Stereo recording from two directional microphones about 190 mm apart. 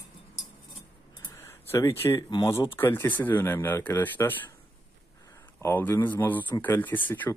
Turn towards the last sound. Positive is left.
turn(degrees=10)  # may be behind; listen again after turning